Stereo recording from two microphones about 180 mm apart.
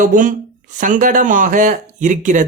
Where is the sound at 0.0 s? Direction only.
45° right (ahead or behind).